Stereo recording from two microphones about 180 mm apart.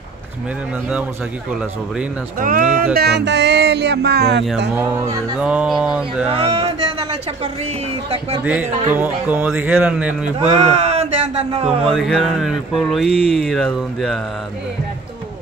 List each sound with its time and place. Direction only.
2.3 s a sound: 50° right (ahead or behind); by 4.5 s 65° right (ahead or behind)
4.7 s speech: 15° right (ahead or behind)
5.4 s speech: 5° right (ahead or behind)
6.3 s music: 35° right (ahead or behind)
8.9 s speech: 10° right (ahead or behind)
10.6 s a sound: 35° right (ahead or behind)
11.9 s speech: centre (ahead or behind)